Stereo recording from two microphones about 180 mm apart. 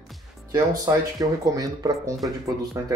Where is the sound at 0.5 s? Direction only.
20° right (ahead or behind).